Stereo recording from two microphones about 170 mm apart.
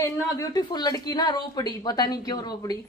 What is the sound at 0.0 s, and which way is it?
Speech, 20° left (ahead or behind).